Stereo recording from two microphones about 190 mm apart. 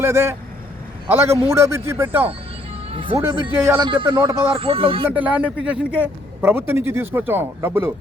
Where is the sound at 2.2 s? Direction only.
30° right (ahead or behind).